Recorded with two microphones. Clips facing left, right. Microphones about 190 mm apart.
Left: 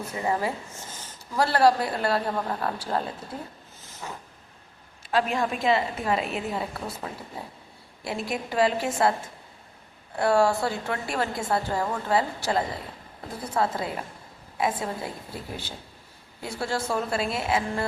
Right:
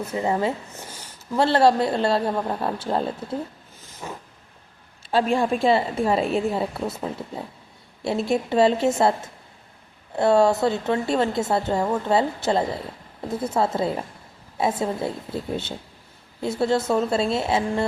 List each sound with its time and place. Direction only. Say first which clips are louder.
0.2 s a woman's voice: right 3 dB; 25° right (ahead or behind)
3.8 s a sound: right 3 dB; 15° right (ahead or behind)
5.1 s a woman's voice: right 5 dB; 30° right (ahead or behind)
10.2 s a woman's voice: right 4 dB; 25° right (ahead or behind)